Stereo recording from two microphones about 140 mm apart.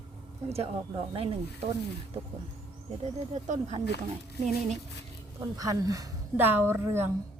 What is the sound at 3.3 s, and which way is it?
Speech, 50° right (ahead or behind).